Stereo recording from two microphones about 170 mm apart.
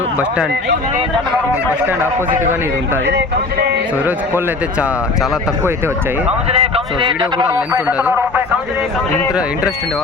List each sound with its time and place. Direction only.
1.8 s speech: 10° right (ahead or behind)
6.5 s a man's voice: 35° right (ahead or behind)
7.9 s speech: 10° right (ahead or behind)